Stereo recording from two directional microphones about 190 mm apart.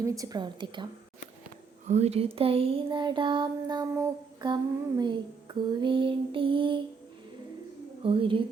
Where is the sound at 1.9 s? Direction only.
35° right (ahead or behind); by 4.5 s 20° right (ahead or behind).